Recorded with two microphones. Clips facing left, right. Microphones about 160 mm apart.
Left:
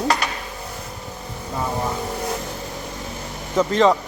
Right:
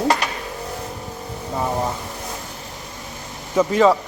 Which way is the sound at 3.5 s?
5° right (ahead or behind).